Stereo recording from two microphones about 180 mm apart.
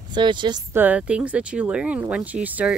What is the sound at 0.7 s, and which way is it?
Speech, 10° right (ahead or behind).